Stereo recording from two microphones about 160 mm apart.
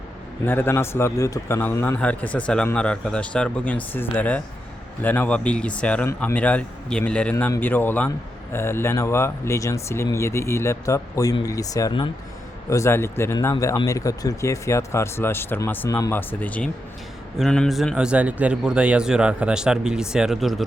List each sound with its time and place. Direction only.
0.4 s speech: 15° left (ahead or behind)
12.7 s a man's voice: 15° left (ahead or behind); by 20.7 s centre (ahead or behind)